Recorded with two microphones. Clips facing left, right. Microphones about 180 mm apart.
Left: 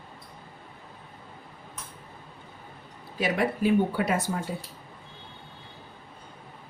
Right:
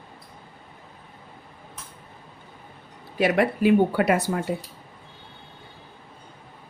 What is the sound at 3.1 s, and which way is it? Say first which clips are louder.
Speech: right 5 dB; 65° right (ahead or behind).